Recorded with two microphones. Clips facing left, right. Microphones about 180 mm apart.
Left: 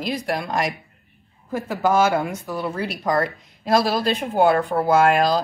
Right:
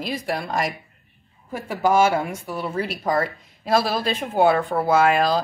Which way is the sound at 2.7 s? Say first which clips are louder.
Even; 5° right (ahead or behind).